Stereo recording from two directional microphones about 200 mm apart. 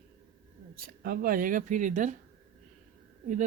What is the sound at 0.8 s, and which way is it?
Speech, 45° right (ahead or behind).